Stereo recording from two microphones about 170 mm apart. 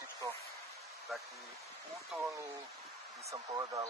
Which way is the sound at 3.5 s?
20° right (ahead or behind).